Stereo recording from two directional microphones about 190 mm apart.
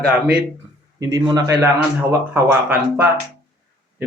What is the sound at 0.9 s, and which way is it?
Speech, 20° right (ahead or behind).